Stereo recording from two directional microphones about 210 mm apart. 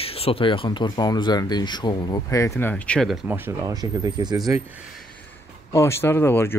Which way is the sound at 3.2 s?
10° right (ahead or behind).